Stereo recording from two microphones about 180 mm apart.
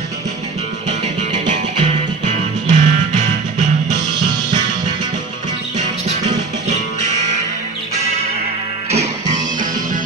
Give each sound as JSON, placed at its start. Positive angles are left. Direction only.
{"t": 1.5, "sound": "music", "side_deg": -40}
{"t": 4.1, "sound": "music", "side_deg": -20}
{"t": 5.8, "sound": "music", "side_deg": -40}
{"t": 8.9, "sound": "music", "side_deg": -40}